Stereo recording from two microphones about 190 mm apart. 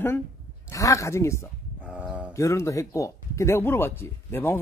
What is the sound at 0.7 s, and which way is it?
Speech, 15° left (ahead or behind).